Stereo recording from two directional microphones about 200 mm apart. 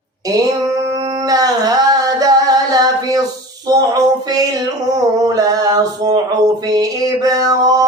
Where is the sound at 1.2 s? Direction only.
20° right (ahead or behind).